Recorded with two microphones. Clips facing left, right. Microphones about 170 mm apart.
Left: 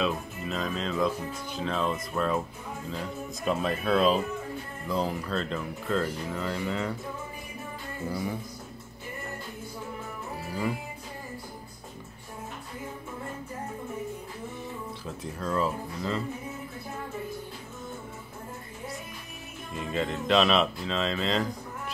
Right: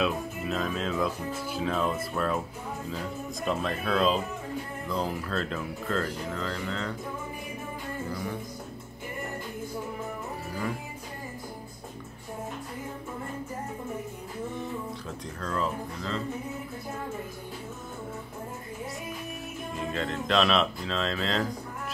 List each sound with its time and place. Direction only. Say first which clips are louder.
0.0 s speech: right 1 dB; centre (ahead or behind)
15.4 s speech: left 2 dB; 10° left (ahead or behind)
19.9 s speech: left 3 dB; 5° left (ahead or behind)